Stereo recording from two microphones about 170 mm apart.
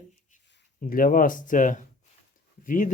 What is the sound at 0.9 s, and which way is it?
Speech, 55° left (ahead or behind).